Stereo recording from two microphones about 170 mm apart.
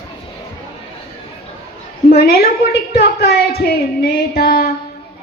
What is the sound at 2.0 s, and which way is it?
A woman's voice, 65° left (ahead or behind).